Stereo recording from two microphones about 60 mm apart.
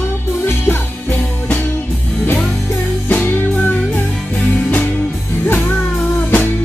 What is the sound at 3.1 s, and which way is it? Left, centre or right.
Music, left.